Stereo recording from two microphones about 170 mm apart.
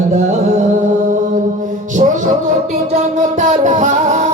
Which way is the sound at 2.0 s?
40° right (ahead or behind).